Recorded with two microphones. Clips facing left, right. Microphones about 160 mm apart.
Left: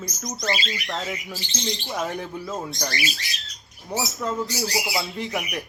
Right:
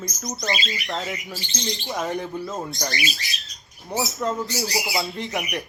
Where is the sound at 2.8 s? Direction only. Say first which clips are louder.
Right 1 dB; 20° right (ahead or behind).